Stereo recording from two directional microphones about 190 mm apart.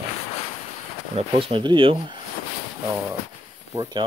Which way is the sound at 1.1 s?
30° right (ahead or behind).